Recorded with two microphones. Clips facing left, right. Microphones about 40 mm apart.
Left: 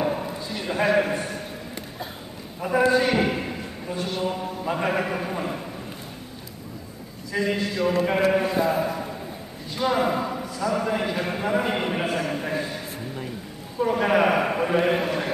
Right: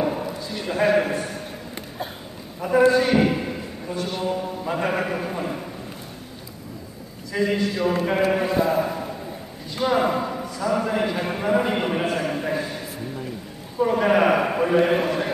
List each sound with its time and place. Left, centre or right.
0.0 s a sound: centre
0.5 s a man's voice: centre
2.6 s a man's voice: centre
7.3 s a man's voice: centre